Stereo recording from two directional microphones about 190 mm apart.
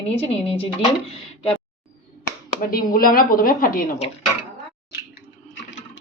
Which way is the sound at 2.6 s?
50° left (ahead or behind).